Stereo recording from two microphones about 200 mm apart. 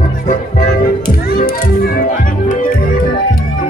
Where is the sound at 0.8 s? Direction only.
50° left (ahead or behind).